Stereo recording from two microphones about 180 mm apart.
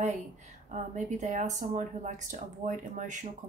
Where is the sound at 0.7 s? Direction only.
40° right (ahead or behind).